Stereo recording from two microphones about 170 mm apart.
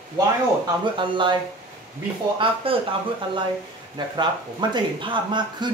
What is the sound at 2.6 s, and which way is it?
Speech, 35° right (ahead or behind).